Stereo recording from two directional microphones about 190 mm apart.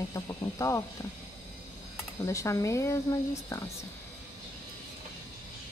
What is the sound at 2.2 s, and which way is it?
Speech, 15° left (ahead or behind).